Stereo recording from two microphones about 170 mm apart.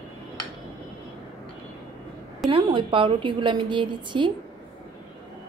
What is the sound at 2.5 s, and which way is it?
A woman's voice, 30° right (ahead or behind).